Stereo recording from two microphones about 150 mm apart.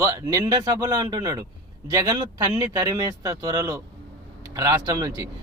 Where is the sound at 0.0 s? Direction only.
20° right (ahead or behind).